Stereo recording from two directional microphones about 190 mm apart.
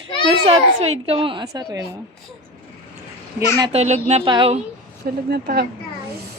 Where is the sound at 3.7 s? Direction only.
35° right (ahead or behind).